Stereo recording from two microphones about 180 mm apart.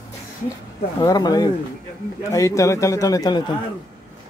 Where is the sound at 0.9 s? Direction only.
20° left (ahead or behind).